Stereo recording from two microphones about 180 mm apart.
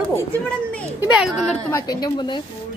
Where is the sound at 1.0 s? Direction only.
5° right (ahead or behind).